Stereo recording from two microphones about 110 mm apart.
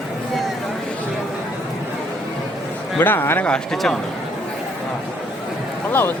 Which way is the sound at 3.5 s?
5° left (ahead or behind).